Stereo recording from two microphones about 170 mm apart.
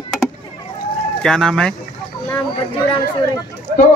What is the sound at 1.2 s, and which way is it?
Speech, 5° left (ahead or behind).